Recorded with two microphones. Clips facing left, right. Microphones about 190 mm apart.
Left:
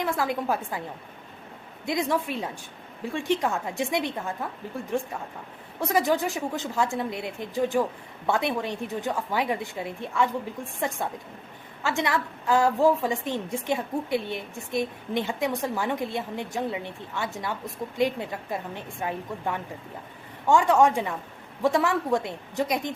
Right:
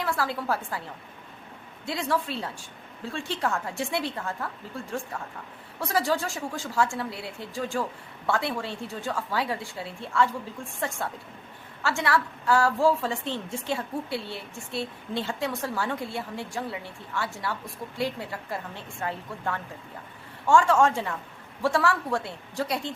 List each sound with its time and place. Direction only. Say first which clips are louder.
0.0 s a woman's voice: left 2 dB; 20° left (ahead or behind)
5.8 s a woman's voice: left 3 dB; 20° left (ahead or behind)